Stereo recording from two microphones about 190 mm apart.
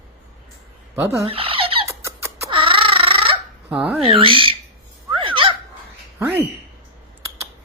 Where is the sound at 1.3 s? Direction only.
30° right (ahead or behind).